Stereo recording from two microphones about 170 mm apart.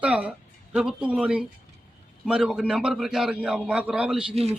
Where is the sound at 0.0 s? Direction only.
5° right (ahead or behind).